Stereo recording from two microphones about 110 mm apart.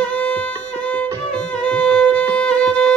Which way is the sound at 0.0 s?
15° left (ahead or behind).